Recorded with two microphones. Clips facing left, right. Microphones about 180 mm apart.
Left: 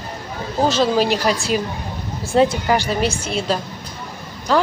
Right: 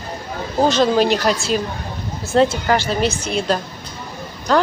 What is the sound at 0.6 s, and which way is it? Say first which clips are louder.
A woman's voice: right 2 dB; 5° left (ahead or behind).